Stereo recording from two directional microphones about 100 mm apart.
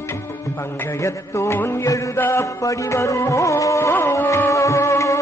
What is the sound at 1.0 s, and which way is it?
Music, 25° left (ahead or behind).